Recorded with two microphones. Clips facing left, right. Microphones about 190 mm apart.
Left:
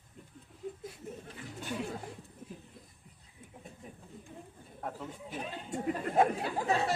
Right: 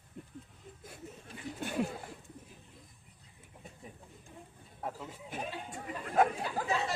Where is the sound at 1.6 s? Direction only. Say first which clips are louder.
Even; 55° right (ahead or behind).